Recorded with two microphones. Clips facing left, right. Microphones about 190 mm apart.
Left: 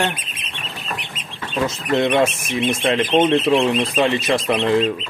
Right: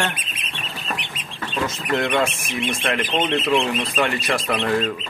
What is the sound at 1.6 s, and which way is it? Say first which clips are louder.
Speech: left 5 dB; 25° left (ahead or behind).